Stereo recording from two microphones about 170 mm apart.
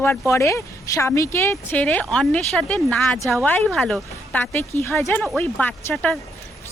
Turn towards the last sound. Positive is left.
turn(degrees=10)  # may be behind; listen again after turning